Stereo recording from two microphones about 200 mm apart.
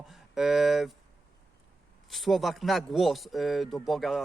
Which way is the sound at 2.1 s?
Centre (ahead or behind).